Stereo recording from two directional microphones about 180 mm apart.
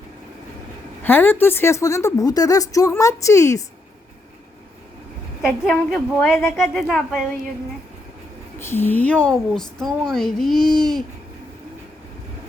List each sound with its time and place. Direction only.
1.0 s a woman's voice: 10° left (ahead or behind)
5.6 s a woman's voice: 10° left (ahead or behind)
6.7 s speech: centre (ahead or behind)
8.5 s speech: 15° left (ahead or behind)